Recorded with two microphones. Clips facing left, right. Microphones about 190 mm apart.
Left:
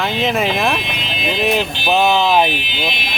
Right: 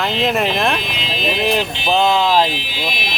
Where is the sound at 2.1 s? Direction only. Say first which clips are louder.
Left 1 dB; 20° left (ahead or behind).